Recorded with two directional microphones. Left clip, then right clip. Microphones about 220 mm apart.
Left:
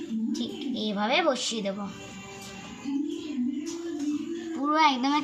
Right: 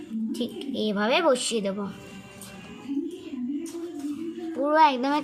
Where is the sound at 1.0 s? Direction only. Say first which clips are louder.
Right 2 dB; 30° right (ahead or behind).